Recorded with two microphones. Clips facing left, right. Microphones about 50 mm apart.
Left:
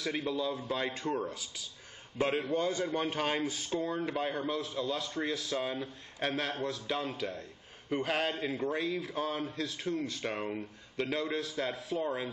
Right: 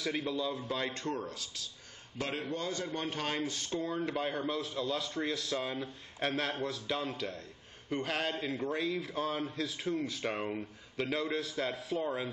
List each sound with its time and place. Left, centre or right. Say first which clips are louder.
0.0 s a man's voice: left 1 dB; centre